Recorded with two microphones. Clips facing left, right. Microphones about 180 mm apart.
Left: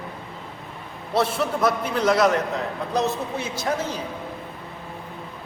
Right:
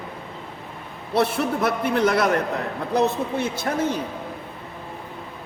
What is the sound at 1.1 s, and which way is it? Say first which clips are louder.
A man's voice: right 1 dB; 60° right (ahead or behind).